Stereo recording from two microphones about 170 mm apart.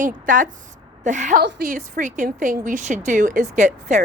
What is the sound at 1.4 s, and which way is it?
Speech, 75° right (ahead or behind).